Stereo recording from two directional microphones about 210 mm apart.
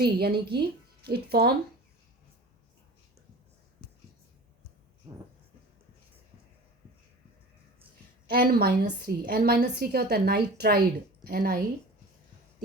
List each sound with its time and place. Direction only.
0.0 s a woman's voice: 50° right (ahead or behind)
8.3 s a woman's voice: 45° right (ahead or behind)